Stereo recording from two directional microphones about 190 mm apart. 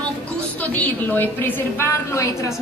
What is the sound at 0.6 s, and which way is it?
A woman's voice, 10° left (ahead or behind).